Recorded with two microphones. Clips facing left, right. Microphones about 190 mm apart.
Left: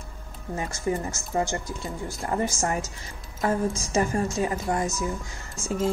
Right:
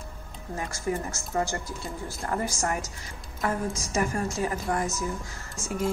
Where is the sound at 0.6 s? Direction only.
20° left (ahead or behind).